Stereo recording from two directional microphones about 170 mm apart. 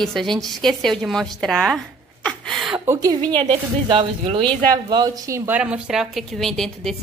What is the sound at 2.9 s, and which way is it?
Speech, 20° right (ahead or behind).